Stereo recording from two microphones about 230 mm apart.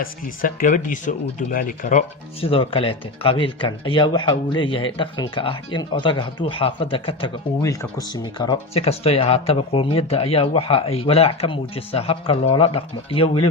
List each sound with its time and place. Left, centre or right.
0.0 s speech: left